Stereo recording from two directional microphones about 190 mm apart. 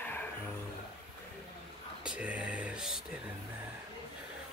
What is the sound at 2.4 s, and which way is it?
Music, 5° right (ahead or behind).